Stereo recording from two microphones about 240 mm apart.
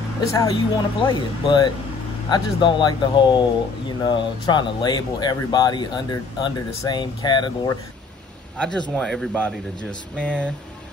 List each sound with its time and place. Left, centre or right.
0.2 s speech: centre
8.5 s speech: centre